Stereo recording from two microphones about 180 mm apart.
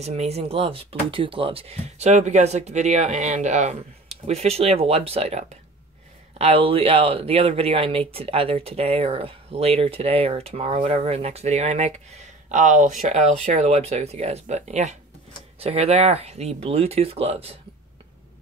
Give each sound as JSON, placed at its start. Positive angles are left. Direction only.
{"t": 0.0, "sound": "speech", "side_deg": -35}